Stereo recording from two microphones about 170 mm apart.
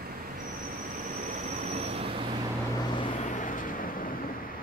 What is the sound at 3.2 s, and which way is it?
Vehicle, 50° left (ahead or behind).